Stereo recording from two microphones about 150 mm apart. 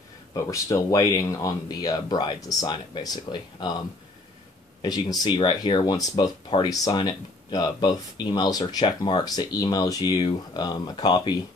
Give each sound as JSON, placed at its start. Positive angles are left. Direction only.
{"t": 0.3, "sound": "speech", "side_deg": 20}
{"t": 4.8, "sound": "speech", "side_deg": 25}